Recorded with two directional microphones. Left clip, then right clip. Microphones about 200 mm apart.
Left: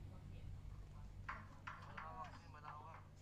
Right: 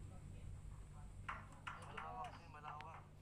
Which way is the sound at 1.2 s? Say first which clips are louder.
Right 2 dB; 50° right (ahead or behind).